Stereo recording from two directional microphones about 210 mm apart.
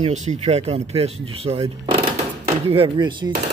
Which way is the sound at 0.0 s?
35° right (ahead or behind).